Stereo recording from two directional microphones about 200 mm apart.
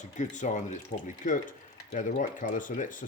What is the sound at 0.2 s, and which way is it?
Speech, 40° left (ahead or behind).